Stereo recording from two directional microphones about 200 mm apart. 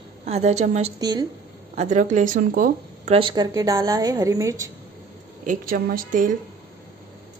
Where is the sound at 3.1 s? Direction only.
20° right (ahead or behind).